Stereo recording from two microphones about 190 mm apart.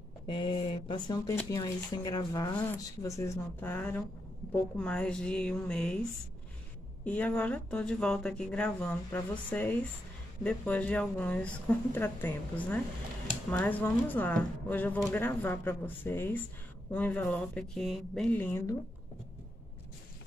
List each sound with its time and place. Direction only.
0.3 s a woman's voice: 25° left (ahead or behind); by 5.9 s 5° left (ahead or behind)
7.1 s speech: 10° left (ahead or behind)